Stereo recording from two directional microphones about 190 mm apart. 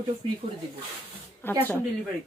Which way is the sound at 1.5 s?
10° left (ahead or behind).